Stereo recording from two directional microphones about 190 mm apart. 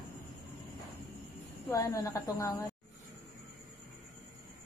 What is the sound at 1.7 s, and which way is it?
Speech, 15° left (ahead or behind).